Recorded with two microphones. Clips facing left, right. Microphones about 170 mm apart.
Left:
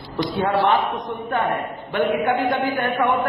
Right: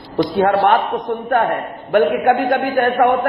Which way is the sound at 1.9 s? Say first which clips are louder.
Right 6 dB; 50° right (ahead or behind).